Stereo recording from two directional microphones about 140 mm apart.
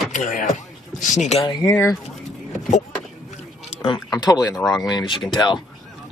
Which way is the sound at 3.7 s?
40° left (ahead or behind).